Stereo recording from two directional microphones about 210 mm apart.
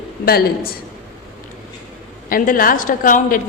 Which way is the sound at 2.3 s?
40° left (ahead or behind).